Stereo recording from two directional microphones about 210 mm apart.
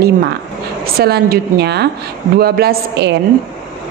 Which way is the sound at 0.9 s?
50° right (ahead or behind).